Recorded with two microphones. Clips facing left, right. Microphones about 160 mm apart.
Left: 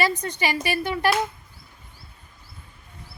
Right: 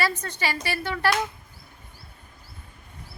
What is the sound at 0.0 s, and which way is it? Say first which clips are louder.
A woman's voice: left 3 dB; 15° left (ahead or behind).